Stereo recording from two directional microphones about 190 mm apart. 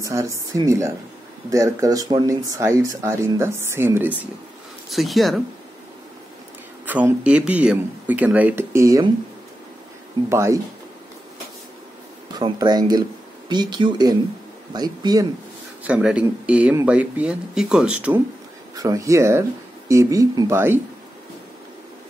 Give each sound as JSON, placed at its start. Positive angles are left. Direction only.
{"t": 0.0, "sound": "speech", "side_deg": -15}
{"t": 4.8, "sound": "speech", "side_deg": 0}
{"t": 6.9, "sound": "speech", "side_deg": -10}
{"t": 10.3, "sound": "speech", "side_deg": -15}
{"t": 12.4, "sound": "speech", "side_deg": -20}
{"t": 15.8, "sound": "speech", "side_deg": -5}
{"t": 18.8, "sound": "speech", "side_deg": -15}